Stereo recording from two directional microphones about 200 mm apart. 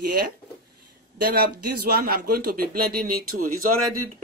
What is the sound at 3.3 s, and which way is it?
Speech, 90° right.